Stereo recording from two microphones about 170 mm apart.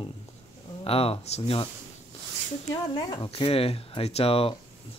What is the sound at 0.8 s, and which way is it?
Speech, 35° left (ahead or behind).